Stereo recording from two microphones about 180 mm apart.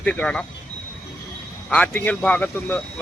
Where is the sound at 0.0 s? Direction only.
5° left (ahead or behind).